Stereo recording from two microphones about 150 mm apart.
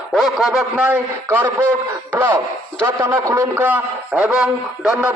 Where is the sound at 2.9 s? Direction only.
15° right (ahead or behind).